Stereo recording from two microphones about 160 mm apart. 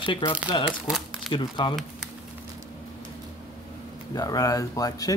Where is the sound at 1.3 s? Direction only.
30° left (ahead or behind).